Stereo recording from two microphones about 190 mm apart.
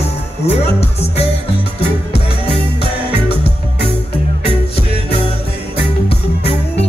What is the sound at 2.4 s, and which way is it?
Music, 30° left (ahead or behind).